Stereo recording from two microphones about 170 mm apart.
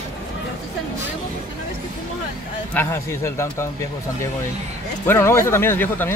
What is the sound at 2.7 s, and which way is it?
Speech, 15° left (ahead or behind).